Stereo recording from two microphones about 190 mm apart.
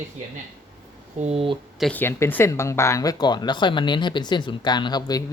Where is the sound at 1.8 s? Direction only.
10° left (ahead or behind).